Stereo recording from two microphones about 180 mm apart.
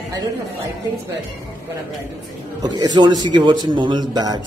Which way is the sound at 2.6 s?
25° right (ahead or behind).